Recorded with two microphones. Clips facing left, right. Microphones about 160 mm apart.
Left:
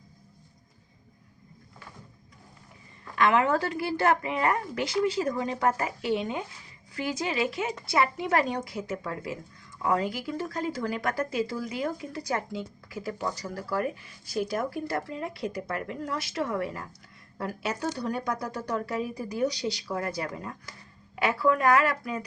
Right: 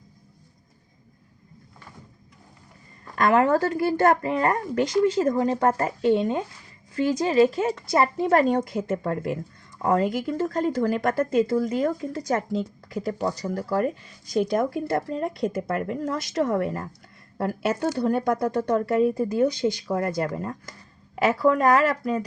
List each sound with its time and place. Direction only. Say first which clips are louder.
3.2 s a woman's voice: right 4 dB; 40° right (ahead or behind)